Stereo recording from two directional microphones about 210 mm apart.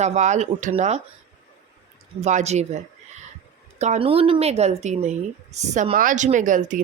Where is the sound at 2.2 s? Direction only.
30° right (ahead or behind).